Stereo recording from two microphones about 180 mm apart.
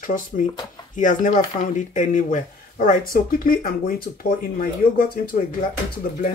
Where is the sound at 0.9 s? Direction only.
45° left (ahead or behind).